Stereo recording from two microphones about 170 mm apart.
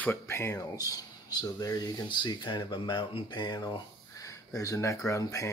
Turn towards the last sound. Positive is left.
turn(degrees=15)  # may be behind; listen again after turning